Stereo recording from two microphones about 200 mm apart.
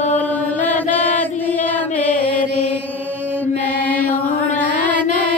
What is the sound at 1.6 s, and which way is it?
Music, 10° left (ahead or behind).